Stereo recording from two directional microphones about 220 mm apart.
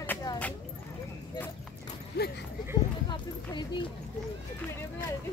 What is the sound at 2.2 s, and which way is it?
Dog, 50° left (ahead or behind).